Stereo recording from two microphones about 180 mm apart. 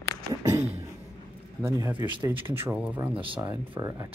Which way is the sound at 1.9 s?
25° right (ahead or behind).